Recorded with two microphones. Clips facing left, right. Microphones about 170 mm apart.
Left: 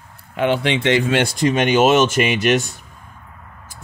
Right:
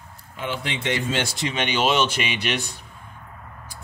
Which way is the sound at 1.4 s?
45° left (ahead or behind).